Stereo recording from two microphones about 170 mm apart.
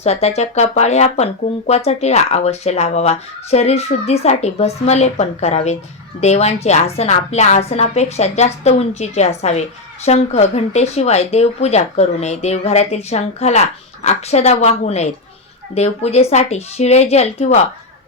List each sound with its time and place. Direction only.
0.0 s speech: 40° left (ahead or behind)